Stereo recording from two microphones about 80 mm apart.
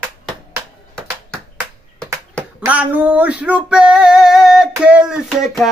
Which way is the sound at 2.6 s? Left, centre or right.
Right.